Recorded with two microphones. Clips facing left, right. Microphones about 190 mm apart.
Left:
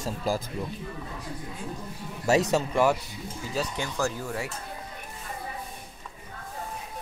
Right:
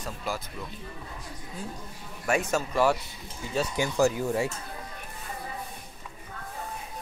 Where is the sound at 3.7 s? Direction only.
15° right (ahead or behind).